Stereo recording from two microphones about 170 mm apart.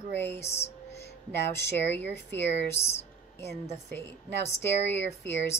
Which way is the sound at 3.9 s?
15° left (ahead or behind).